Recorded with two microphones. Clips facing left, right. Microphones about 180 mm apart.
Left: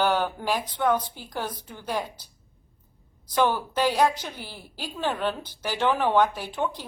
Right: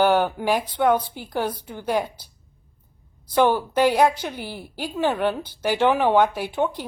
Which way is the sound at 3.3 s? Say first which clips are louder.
Right 5 dB; 55° right (ahead or behind).